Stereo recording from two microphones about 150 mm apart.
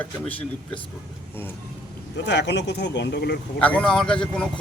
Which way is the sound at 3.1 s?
90° left.